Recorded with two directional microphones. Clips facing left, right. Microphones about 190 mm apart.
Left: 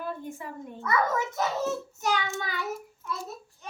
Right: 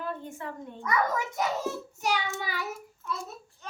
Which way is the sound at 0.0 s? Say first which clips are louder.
Even; 10° left (ahead or behind).